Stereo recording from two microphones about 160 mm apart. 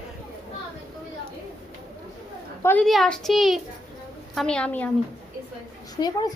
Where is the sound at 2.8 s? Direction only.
Centre (ahead or behind).